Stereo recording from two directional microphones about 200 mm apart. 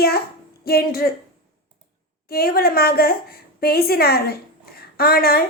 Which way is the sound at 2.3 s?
50° left (ahead or behind).